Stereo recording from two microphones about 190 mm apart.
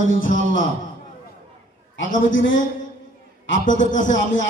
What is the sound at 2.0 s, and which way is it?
Music, 45° left (ahead or behind).